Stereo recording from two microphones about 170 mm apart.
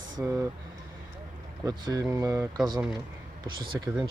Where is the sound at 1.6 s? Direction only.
20° right (ahead or behind).